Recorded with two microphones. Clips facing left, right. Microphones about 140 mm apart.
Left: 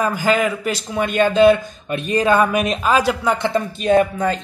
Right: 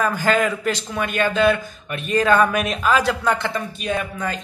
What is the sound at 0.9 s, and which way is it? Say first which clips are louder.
Speech: left 7 dB; 25° left (ahead or behind).